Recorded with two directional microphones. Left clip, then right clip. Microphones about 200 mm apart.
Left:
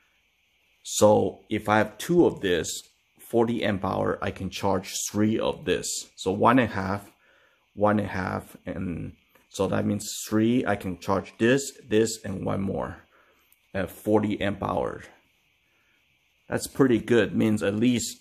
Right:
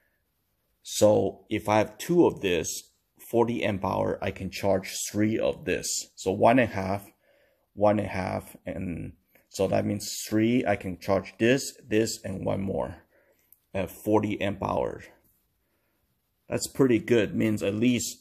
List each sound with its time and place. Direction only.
0.8 s speech: centre (ahead or behind)
8.0 s speech: centre (ahead or behind)
16.4 s speech: centre (ahead or behind)